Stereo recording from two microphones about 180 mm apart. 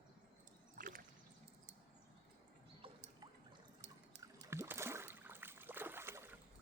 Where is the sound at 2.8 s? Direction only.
30° right (ahead or behind).